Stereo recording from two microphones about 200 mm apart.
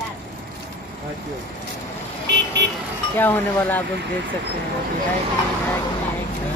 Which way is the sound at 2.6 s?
60° right (ahead or behind).